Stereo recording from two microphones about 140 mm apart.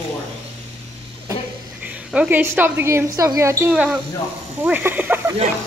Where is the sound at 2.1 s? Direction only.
10° right (ahead or behind).